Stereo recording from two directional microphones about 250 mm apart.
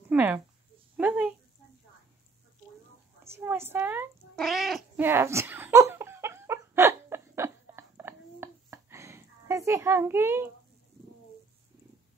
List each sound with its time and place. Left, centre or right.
0.1 s a sound: centre
0.9 s speech: centre
3.3 s cat: centre